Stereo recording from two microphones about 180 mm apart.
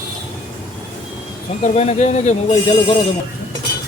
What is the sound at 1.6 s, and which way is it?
Speech, 35° left (ahead or behind).